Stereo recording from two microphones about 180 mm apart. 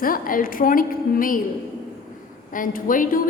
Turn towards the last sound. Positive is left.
turn(degrees=50)  # may be behind; listen again after turning